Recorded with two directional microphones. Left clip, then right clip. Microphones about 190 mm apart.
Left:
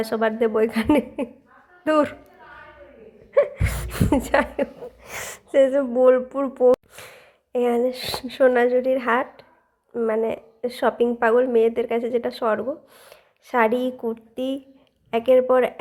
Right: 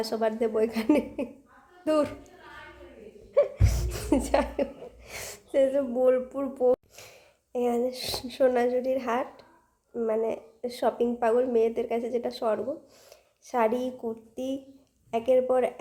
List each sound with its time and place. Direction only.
0.0 s a woman's voice: 15° left (ahead or behind)
3.3 s gasp: 20° left (ahead or behind)
6.9 s a woman's voice: 20° left (ahead or behind)